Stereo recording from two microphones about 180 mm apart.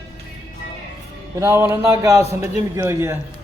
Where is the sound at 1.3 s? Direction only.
15° right (ahead or behind).